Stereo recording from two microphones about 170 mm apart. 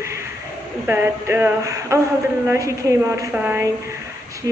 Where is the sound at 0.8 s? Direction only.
10° right (ahead or behind).